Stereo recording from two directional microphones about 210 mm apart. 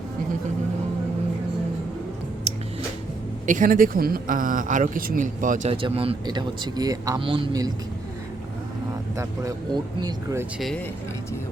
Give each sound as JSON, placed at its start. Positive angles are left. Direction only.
{"t": 3.4, "sound": "speech", "side_deg": -40}
{"t": 9.1, "sound": "speech", "side_deg": -15}